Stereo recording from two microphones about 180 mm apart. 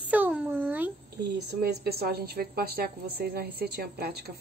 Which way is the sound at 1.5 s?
65° right (ahead or behind).